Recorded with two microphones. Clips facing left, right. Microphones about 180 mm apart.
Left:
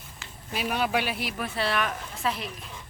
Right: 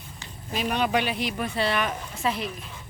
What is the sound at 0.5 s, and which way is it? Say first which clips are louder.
Speech: right 2 dB; 5° left (ahead or behind).